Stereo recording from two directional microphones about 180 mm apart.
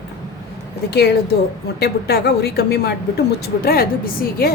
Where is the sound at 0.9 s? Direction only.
65° left (ahead or behind).